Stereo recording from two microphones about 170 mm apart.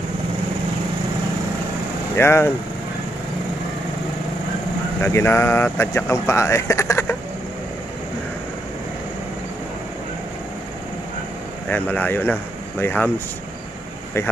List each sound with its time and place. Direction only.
2.1 s speech: 15° left (ahead or behind)
5.0 s speech: 15° left (ahead or behind)
11.7 s speech: 10° left (ahead or behind)